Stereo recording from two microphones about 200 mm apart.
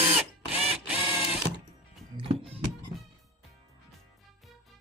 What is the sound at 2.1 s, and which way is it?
Music, 25° right (ahead or behind).